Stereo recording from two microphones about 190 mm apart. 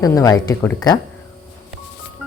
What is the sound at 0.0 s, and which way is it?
Speech, 15° left (ahead or behind).